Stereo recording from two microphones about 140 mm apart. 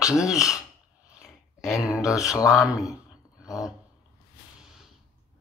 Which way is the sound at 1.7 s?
Centre (ahead or behind).